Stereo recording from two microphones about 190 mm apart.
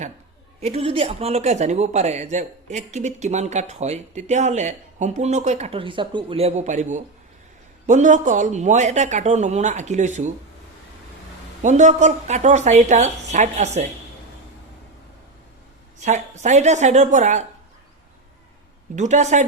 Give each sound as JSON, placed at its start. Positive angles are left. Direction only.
{"t": 0.6, "sound": "speech", "side_deg": -30}
{"t": 11.6, "sound": "speech", "side_deg": -40}
{"t": 16.0, "sound": "speech", "side_deg": -40}
{"t": 18.9, "sound": "speech", "side_deg": -40}